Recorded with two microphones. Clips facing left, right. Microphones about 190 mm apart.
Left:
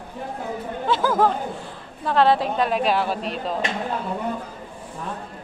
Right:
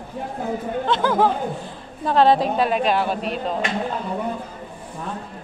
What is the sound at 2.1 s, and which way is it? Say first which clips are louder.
Speech: right 2 dB; 20° right (ahead or behind).